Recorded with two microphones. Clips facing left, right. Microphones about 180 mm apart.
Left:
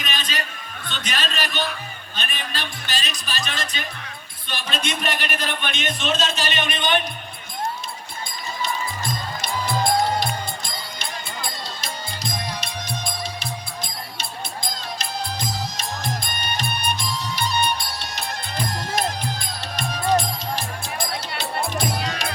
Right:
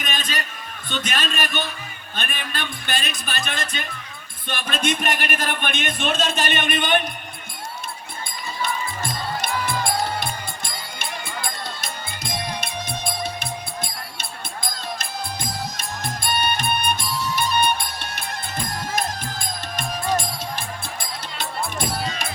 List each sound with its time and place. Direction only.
0.0 s a sound: 50° right (ahead or behind)
0.9 s a man's voice: 50° right (ahead or behind)
11.0 s music: 50° right (ahead or behind)